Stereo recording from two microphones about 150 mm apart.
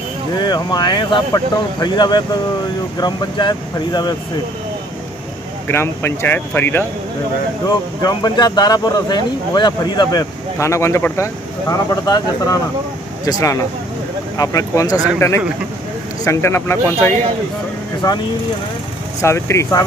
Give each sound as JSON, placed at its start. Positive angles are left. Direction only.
{"t": 0.4, "sound": "speech", "side_deg": 25}
{"t": 5.7, "sound": "speech", "side_deg": 15}
{"t": 7.6, "sound": "speech", "side_deg": 25}
{"t": 19.2, "sound": "speech", "side_deg": 20}